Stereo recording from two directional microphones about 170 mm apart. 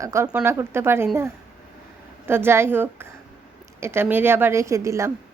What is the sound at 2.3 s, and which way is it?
Speech, 15° right (ahead or behind).